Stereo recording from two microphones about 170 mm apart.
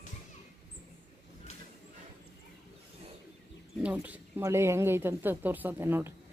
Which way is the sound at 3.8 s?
10° right (ahead or behind).